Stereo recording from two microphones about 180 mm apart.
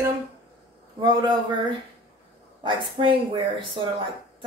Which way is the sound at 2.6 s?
30° right (ahead or behind).